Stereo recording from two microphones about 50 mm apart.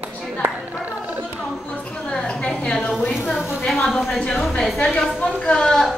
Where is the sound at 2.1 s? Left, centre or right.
Left.